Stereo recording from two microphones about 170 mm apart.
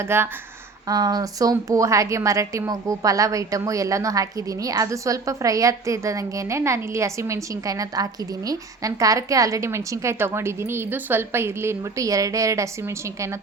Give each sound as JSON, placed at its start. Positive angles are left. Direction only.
{"t": 0.0, "sound": "a woman's voice", "side_deg": -15}